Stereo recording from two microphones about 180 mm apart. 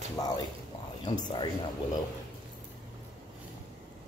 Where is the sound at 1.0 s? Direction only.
25° left (ahead or behind).